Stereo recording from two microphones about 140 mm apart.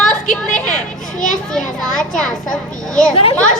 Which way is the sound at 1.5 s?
5° left (ahead or behind).